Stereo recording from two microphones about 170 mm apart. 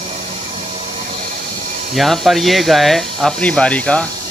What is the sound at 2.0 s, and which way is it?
Speech, centre (ahead or behind).